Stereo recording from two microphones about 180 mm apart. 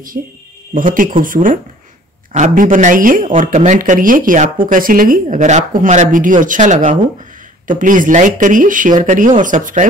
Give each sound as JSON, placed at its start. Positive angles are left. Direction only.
{"t": 0.2, "sound": "speech", "side_deg": -50}